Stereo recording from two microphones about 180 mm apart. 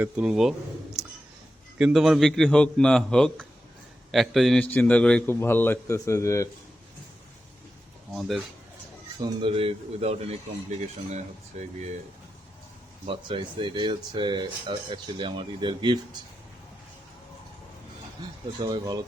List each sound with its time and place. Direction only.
0.0 s a man's voice: 5° right (ahead or behind)
1.8 s a man's voice: centre (ahead or behind); by 6.5 s 15° left (ahead or behind)
8.1 s a man's voice: centre (ahead or behind)
9.1 s speech: 25° right (ahead or behind)
13.1 s speech: 25° right (ahead or behind)
18.6 s speech: 20° right (ahead or behind)